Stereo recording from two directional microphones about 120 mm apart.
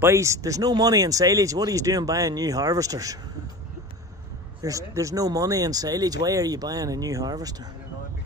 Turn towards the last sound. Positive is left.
turn(degrees=-35)  # may be behind; listen again after turning